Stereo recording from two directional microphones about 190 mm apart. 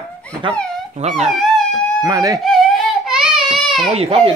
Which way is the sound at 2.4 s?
Centre (ahead or behind).